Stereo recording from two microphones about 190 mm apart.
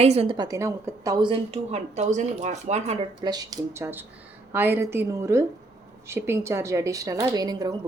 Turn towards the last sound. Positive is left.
turn(degrees=-20)  # may be behind; listen again after turning